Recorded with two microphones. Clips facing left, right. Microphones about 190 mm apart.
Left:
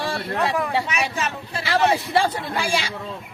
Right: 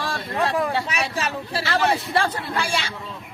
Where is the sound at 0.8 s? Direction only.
35° right (ahead or behind).